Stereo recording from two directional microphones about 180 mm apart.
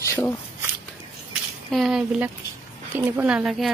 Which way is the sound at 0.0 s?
15° left (ahead or behind).